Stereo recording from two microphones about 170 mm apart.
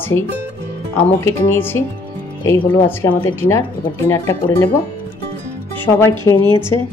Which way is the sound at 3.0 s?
15° left (ahead or behind).